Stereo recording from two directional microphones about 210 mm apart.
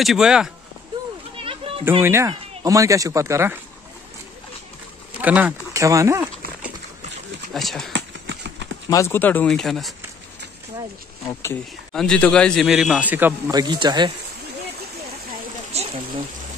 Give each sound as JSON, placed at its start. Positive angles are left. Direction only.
{"t": 0.0, "sound": "a man's voice", "side_deg": 0}
{"t": 1.3, "sound": "children playing", "side_deg": -25}
{"t": 1.9, "sound": "speech", "side_deg": -10}
{"t": 5.2, "sound": "speech", "side_deg": -10}
{"t": 7.5, "sound": "a man's voice", "side_deg": 0}
{"t": 7.9, "sound": "a sound", "side_deg": -55}
{"t": 8.9, "sound": "speech", "side_deg": 10}
{"t": 11.9, "sound": "a man's voice", "side_deg": 5}
{"t": 15.7, "sound": "a sound", "side_deg": -30}